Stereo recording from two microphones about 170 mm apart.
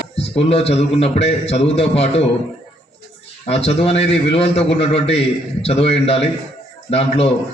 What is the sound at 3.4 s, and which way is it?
A man's voice, 35° left (ahead or behind).